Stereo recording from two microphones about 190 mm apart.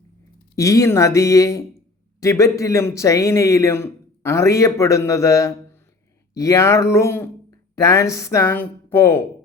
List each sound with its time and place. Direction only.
0.5 s a man's voice: 15° left (ahead or behind)